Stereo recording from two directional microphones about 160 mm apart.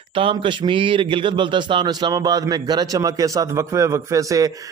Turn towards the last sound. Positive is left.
turn(degrees=-20)  # may be behind; listen again after turning